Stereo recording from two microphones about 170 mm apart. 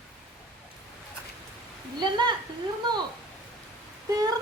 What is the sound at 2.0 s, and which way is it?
Speech, 25° right (ahead or behind).